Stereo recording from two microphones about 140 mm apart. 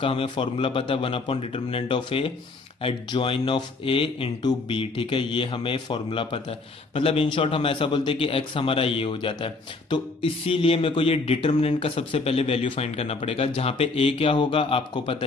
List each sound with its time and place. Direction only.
0.0 s a man's voice: 40° left (ahead or behind)